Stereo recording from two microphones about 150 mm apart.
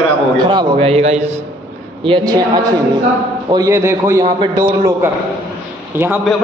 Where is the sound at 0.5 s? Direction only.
35° right (ahead or behind).